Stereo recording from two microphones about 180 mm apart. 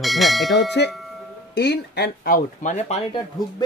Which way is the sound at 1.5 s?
60° left (ahead or behind).